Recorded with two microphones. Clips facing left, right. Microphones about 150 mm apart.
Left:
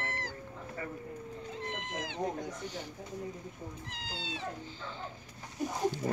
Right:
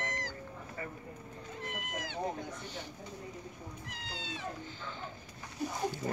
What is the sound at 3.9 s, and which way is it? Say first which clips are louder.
Speech: left 2 dB; 30° left (ahead or behind).